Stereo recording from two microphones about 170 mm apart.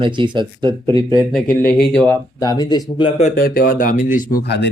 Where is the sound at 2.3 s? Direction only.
20° left (ahead or behind).